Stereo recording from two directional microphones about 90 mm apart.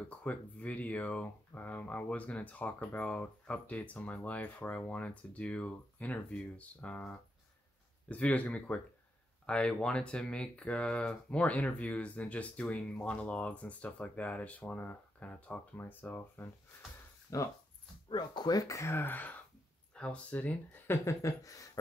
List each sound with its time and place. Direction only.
0.2 s speech: 15° left (ahead or behind)
17.3 s speech: 35° left (ahead or behind)
18.1 s speech: 50° left (ahead or behind)